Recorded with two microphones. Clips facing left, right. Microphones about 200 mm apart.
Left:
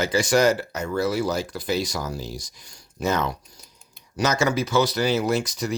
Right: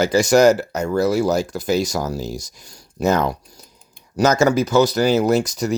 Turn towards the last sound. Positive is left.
turn(degrees=-40)  # may be behind; listen again after turning